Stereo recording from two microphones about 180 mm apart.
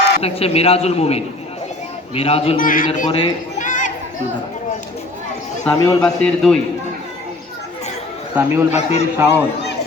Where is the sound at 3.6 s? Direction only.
45° left (ahead or behind).